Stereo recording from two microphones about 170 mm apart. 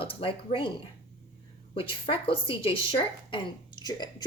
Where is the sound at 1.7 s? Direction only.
30° left (ahead or behind).